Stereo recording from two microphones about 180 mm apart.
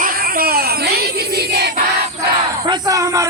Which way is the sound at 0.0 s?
55° right (ahead or behind).